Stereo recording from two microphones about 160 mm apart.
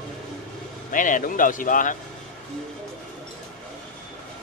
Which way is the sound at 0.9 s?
55° left (ahead or behind).